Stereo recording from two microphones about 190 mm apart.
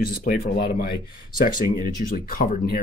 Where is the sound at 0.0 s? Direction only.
50° left (ahead or behind).